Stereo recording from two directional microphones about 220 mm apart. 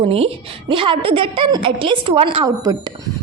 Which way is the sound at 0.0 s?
25° right (ahead or behind).